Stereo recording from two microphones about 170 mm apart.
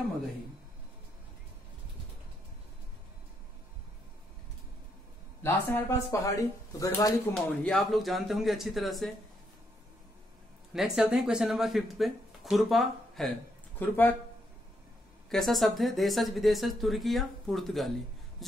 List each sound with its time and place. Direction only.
5.4 s speech: 15° left (ahead or behind)
7.6 s speech: centre (ahead or behind)
10.7 s speech: centre (ahead or behind)
13.7 s speech: 10° left (ahead or behind)
15.2 s speech: centre (ahead or behind)